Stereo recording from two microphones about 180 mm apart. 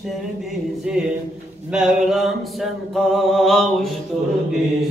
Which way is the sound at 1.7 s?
Centre (ahead or behind).